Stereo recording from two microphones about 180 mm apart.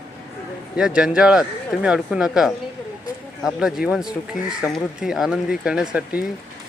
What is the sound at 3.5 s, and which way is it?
Speech, 5° right (ahead or behind).